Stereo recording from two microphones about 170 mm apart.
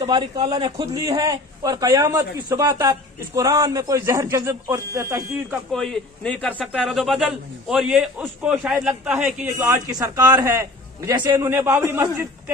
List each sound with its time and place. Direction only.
0.0 s a man's voice: 25° right (ahead or behind)
5.5 s a man's voice: 5° left (ahead or behind)
9.6 s a man's voice: 20° right (ahead or behind)